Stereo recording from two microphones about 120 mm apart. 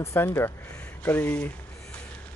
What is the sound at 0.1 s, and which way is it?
Speech, 20° left (ahead or behind).